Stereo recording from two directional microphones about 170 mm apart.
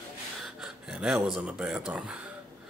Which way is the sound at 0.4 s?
5° right (ahead or behind).